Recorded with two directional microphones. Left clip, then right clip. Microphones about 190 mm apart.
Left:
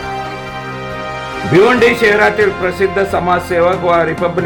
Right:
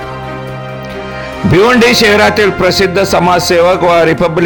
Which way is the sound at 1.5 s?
40° right (ahead or behind).